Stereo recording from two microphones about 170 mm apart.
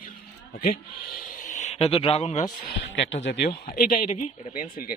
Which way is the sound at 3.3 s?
70° left (ahead or behind).